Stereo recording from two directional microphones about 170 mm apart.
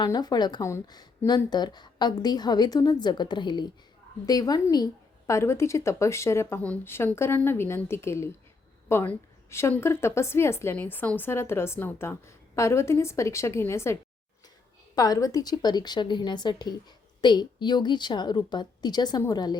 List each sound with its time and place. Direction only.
0.0 s a woman's voice: 25° left (ahead or behind)